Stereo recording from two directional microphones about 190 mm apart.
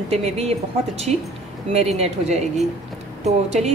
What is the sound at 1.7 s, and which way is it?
A woman's voice, 35° right (ahead or behind).